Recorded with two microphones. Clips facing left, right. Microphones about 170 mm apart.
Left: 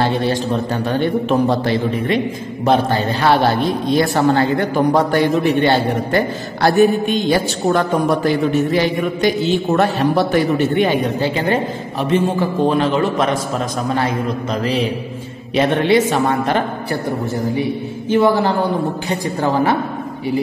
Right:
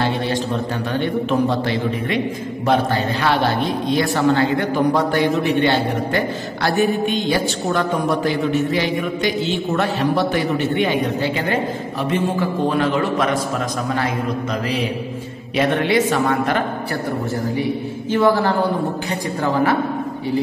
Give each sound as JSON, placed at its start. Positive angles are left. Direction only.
{"t": 1.6, "sound": "a man's voice", "side_deg": 35}
{"t": 3.2, "sound": "a man's voice", "side_deg": 35}
{"t": 15.5, "sound": "a man's voice", "side_deg": 30}
{"t": 18.1, "sound": "a man's voice", "side_deg": 20}